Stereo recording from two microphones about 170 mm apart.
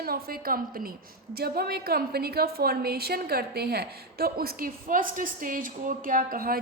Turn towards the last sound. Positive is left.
turn(degrees=-60)  # may be behind; listen again after turning